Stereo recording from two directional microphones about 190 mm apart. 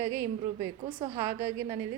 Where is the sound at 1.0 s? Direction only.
15° right (ahead or behind).